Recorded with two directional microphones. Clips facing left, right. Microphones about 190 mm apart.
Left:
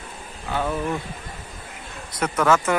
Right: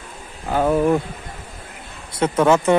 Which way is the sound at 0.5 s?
45° right (ahead or behind).